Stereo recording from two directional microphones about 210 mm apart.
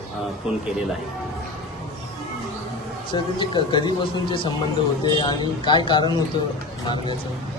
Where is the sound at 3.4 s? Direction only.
20° left (ahead or behind).